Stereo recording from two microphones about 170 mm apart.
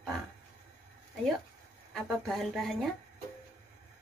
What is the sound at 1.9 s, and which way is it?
A woman's voice, centre (ahead or behind).